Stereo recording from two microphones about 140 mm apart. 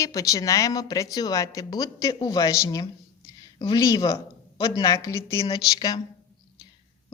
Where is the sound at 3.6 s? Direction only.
30° left (ahead or behind).